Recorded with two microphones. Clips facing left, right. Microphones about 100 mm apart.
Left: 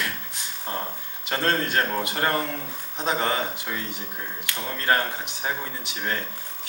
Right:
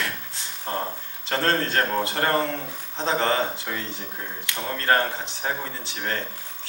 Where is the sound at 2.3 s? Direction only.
20° right (ahead or behind).